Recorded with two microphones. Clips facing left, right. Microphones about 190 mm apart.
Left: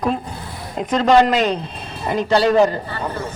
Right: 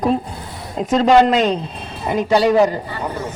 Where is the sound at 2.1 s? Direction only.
10° right (ahead or behind).